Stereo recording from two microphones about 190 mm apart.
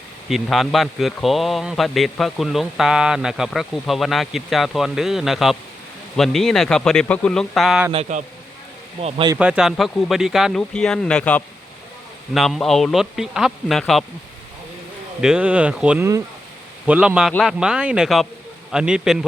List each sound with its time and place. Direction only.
0.3 s a man's voice: centre (ahead or behind)
8.1 s speech: 40° right (ahead or behind)
9.4 s a man's voice: 5° right (ahead or behind)
15.2 s a man's voice: 5° right (ahead or behind)